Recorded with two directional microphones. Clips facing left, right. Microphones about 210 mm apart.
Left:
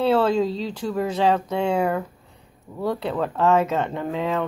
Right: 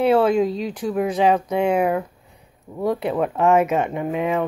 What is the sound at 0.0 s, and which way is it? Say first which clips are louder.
Speech: right 3 dB; 15° right (ahead or behind).